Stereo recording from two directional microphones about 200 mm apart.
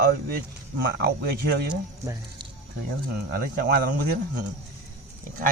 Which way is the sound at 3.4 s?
45° right (ahead or behind).